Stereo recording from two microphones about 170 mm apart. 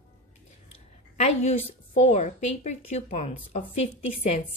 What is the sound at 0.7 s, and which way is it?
A woman's voice, 40° left (ahead or behind).